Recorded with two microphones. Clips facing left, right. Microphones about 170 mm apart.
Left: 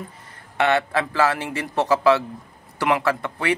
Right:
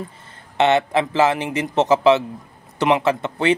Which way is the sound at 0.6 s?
20° right (ahead or behind).